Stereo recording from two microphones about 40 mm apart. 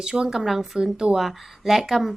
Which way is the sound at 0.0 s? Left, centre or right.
Centre.